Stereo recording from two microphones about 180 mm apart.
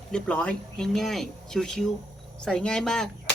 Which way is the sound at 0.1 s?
5° left (ahead or behind).